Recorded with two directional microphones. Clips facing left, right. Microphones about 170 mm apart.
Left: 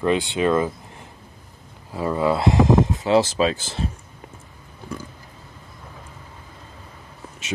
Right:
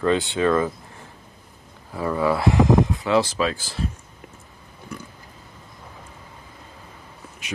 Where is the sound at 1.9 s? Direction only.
20° left (ahead or behind).